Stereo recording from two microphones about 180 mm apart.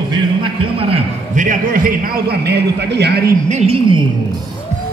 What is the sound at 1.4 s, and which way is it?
A man's voice, 50° right (ahead or behind).